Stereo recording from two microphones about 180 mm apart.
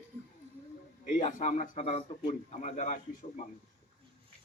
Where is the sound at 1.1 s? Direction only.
40° left (ahead or behind).